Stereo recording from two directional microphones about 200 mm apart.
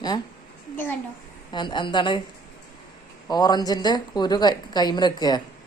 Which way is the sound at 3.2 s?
20° left (ahead or behind).